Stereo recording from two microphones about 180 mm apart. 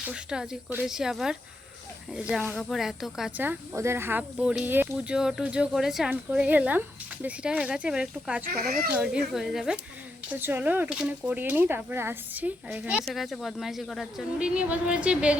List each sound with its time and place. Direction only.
0.0 s speech: 5° right (ahead or behind)
8.4 s speech: 55° right (ahead or behind)
8.9 s speech: 5° right (ahead or behind)